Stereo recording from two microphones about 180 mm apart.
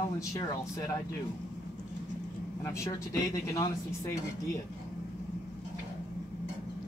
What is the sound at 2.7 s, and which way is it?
Speech, 15° left (ahead or behind).